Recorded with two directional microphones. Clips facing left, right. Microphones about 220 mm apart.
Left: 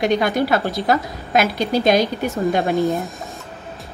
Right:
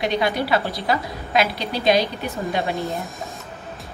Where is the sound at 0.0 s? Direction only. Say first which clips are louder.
Left 4 dB; 45° left (ahead or behind).